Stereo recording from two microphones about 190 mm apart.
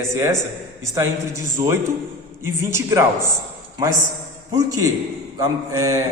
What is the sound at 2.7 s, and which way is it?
Speech, 15° right (ahead or behind).